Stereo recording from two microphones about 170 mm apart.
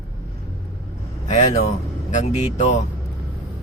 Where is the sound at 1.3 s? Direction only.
40° left (ahead or behind).